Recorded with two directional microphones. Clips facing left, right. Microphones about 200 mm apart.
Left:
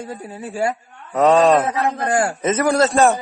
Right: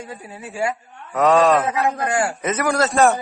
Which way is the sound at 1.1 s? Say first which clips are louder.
Left 2 dB; 25° left (ahead or behind).